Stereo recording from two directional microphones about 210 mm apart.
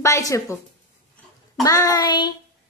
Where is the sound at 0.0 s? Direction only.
15° left (ahead or behind).